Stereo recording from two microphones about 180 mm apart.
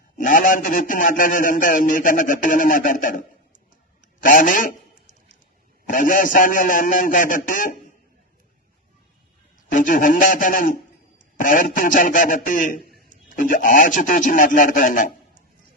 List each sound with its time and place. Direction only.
0.2 s a man's voice: 50° left (ahead or behind)
4.2 s a sound: 50° left (ahead or behind)
5.9 s a man's voice: 50° left (ahead or behind)
9.6 s a man's voice: 45° left (ahead or behind)